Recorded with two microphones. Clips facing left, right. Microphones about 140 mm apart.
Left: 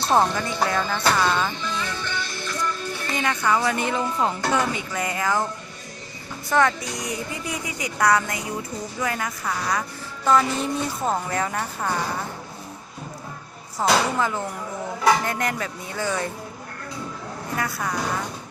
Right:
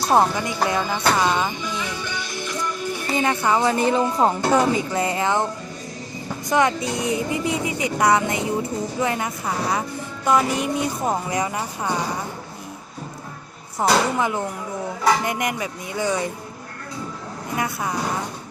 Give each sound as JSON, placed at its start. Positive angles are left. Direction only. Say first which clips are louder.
{"t": 0.0, "sound": "speech", "louder": "right 2 dB", "side_deg": -5}
{"t": 1.1, "sound": "music", "louder": "right 2 dB", "side_deg": -15}
{"t": 3.1, "sound": "speech", "louder": "right 3 dB", "side_deg": -25}
{"t": 6.5, "sound": "speech", "louder": "right 1 dB", "side_deg": -15}
{"t": 13.8, "sound": "speech", "louder": "right 2 dB", "side_deg": -15}
{"t": 17.6, "sound": "speech", "louder": "right 2 dB", "side_deg": -20}